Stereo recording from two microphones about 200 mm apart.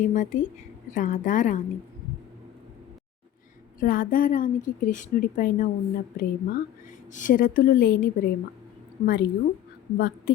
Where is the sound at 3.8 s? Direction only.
45° left (ahead or behind).